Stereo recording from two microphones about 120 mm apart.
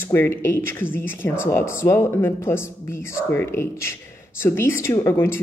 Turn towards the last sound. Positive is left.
turn(degrees=20)  # may be behind; listen again after turning